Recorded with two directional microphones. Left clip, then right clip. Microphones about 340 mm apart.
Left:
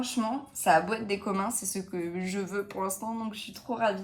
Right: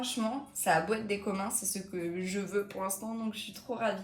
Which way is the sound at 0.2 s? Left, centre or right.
Centre.